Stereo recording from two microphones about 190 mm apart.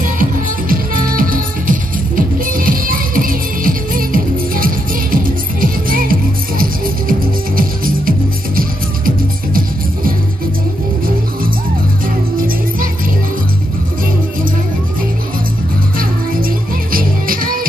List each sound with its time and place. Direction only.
0.0 s music: 45° right (ahead or behind)
12.4 s music: 50° right (ahead or behind)
16.0 s music: 50° right (ahead or behind)